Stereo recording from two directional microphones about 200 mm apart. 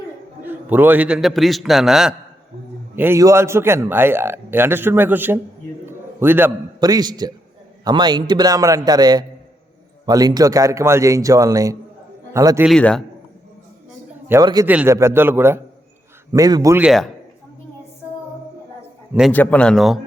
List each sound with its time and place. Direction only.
0.4 s a man's voice: 10° right (ahead or behind)
12.6 s a man's voice: 5° left (ahead or behind)
14.3 s a man's voice: 15° right (ahead or behind)
16.8 s a man's voice: centre (ahead or behind)
19.3 s a man's voice: 10° left (ahead or behind)